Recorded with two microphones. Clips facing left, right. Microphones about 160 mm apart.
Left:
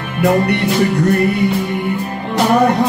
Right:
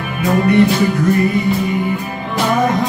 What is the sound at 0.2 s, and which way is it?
Music, 70° left (ahead or behind).